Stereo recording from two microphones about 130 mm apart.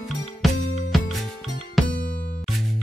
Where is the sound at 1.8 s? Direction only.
Centre (ahead or behind).